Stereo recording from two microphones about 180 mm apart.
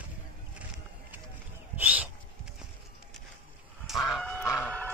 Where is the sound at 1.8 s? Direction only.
10° right (ahead or behind).